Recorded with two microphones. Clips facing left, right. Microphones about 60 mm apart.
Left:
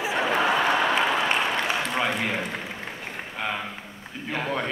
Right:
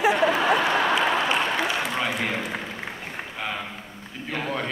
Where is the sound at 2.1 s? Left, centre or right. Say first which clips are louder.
Even; centre.